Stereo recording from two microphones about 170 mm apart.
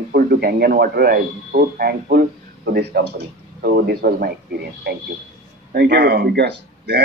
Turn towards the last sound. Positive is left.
turn(degrees=-75)  # may be behind; listen again after turning